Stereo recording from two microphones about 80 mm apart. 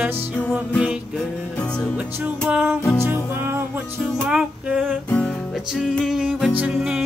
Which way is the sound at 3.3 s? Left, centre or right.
Right.